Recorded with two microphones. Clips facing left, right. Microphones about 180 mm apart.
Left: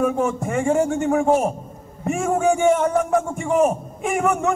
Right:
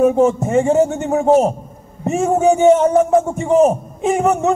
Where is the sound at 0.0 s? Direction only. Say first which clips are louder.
Right 7 dB; 25° right (ahead or behind).